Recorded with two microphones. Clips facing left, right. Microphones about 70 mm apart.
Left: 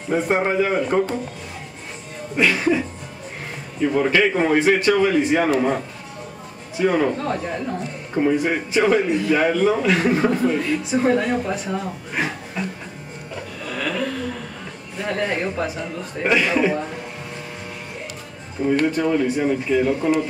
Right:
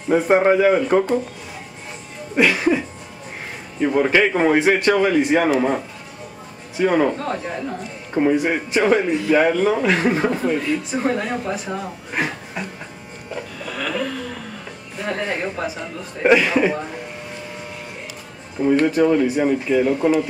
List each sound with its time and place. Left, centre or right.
0.1 s a man's voice: centre
2.3 s a man's voice: centre
3.8 s a man's voice: centre
6.8 s a man's voice: centre
13.7 s a sound: centre
15.0 s a man's voice: centre
18.6 s a man's voice: centre